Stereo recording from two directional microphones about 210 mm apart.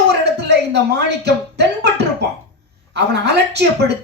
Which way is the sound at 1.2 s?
50° right (ahead or behind).